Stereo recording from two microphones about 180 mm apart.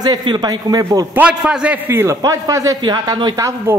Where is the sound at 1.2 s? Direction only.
5° right (ahead or behind).